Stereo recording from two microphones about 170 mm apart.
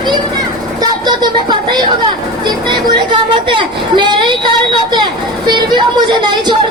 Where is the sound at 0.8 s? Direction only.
25° right (ahead or behind).